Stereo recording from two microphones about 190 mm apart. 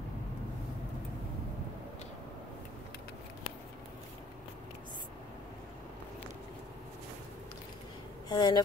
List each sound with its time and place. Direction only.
8.3 s speech: 20° left (ahead or behind)